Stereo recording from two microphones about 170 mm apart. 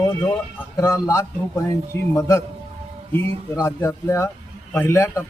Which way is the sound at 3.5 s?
15° left (ahead or behind).